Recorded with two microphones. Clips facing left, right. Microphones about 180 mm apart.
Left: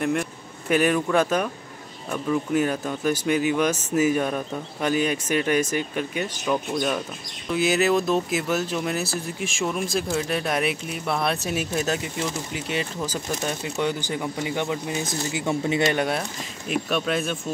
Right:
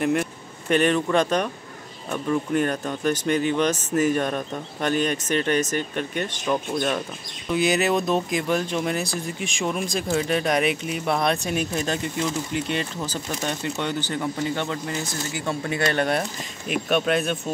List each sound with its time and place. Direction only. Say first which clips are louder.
0.0 s a man's voice: right 2 dB; centre (ahead or behind)
7.5 s speech: even; centre (ahead or behind)
16.6 s speech: right 2 dB; 5° right (ahead or behind)